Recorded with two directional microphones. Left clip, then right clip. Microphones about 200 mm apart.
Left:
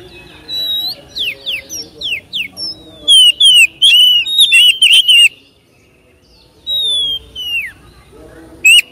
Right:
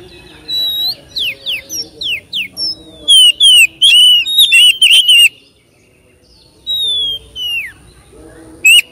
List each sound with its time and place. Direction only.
0.0 s bird: centre (ahead or behind)
3.3 s whistle: 5° left (ahead or behind)
6.8 s a sound: centre (ahead or behind)